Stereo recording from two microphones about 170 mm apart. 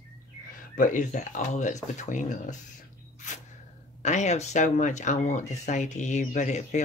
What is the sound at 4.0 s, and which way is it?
Speech, 45° left (ahead or behind).